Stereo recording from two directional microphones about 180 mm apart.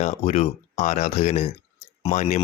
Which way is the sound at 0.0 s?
35° left (ahead or behind).